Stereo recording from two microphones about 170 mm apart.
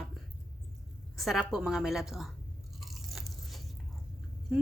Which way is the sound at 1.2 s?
Centre (ahead or behind).